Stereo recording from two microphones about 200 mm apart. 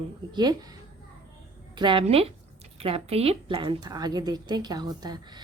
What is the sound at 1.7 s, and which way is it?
A woman's voice, 25° right (ahead or behind).